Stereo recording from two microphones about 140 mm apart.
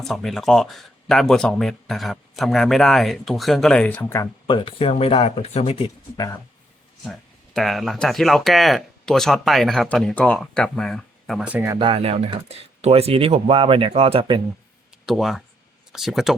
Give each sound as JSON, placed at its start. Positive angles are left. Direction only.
{"t": 0.0, "sound": "speech", "side_deg": 0}
{"t": 4.4, "sound": "speech", "side_deg": 35}
{"t": 6.1, "sound": "speech", "side_deg": 25}
{"t": 7.0, "sound": "speech", "side_deg": 0}
{"t": 11.8, "sound": "speech", "side_deg": -40}
{"t": 15.0, "sound": "speech", "side_deg": 0}